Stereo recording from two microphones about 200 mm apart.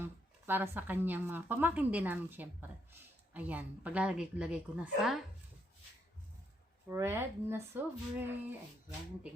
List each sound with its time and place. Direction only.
0.0 s speech: 10° right (ahead or behind)
6.8 s speech: 10° right (ahead or behind)